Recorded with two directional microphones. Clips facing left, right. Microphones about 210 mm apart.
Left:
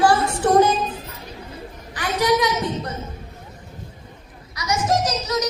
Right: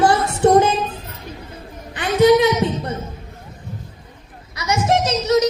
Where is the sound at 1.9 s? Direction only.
25° right (ahead or behind).